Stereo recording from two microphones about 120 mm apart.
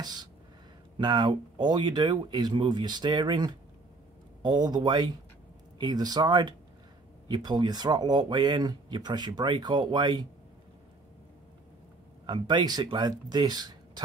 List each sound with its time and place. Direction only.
0.0 s a sound: 35° right (ahead or behind)
0.9 s speech: 40° right (ahead or behind)
12.3 s speech: 40° right (ahead or behind)